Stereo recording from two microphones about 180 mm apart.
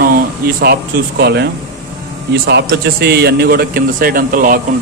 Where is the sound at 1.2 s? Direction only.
70° right (ahead or behind); by 4.5 s 50° right (ahead or behind).